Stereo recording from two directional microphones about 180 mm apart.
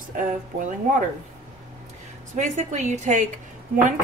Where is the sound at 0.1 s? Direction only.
45° right (ahead or behind).